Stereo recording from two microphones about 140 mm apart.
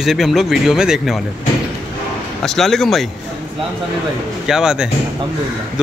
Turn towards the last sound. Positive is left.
turn(degrees=-5)  # may be behind; listen again after turning